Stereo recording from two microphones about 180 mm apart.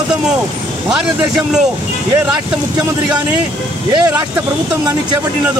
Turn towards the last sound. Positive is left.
turn(degrees=-20)  # may be behind; listen again after turning